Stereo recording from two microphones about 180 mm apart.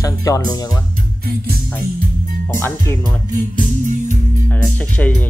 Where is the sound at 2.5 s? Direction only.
15° left (ahead or behind).